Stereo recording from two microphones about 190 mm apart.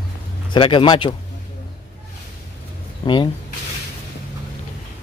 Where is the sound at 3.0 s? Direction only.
25° left (ahead or behind).